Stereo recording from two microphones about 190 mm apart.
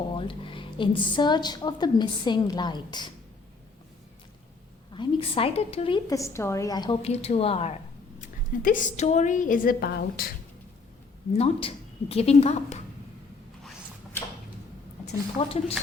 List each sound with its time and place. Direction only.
0.2 s a woman's voice: 25° left (ahead or behind)
4.9 s a woman's voice: 25° left (ahead or behind)
6.1 s a woman's voice: 15° left (ahead or behind); by 7.8 s 30° left (ahead or behind)
8.2 s a woman's voice: 45° left (ahead or behind)
11.3 s a woman's voice: 30° left (ahead or behind)
15.0 s a woman's voice: 30° left (ahead or behind)